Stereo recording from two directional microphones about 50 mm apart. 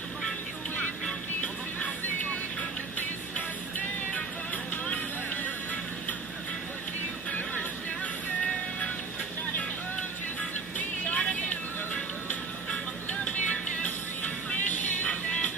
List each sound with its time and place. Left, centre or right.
11.1 s vehicle: left
13.1 s music: left